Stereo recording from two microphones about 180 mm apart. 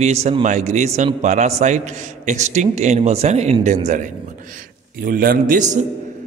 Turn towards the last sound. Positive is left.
turn(degrees=-45)  # may be behind; listen again after turning